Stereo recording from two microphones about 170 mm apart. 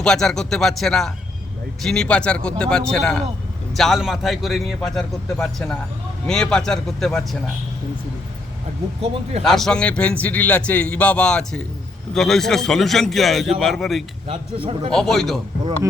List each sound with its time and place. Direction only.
0.0 s a man's voice: 5° left (ahead or behind)
9.4 s a man's voice: centre (ahead or behind)
14.3 s speech: 35° right (ahead or behind)
14.9 s a man's voice: 5° left (ahead or behind)